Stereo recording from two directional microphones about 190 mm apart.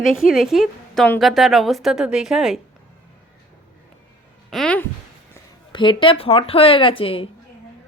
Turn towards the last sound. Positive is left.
turn(degrees=30)  # may be behind; listen again after turning